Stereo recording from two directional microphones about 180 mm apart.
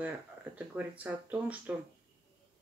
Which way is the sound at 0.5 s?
10° right (ahead or behind).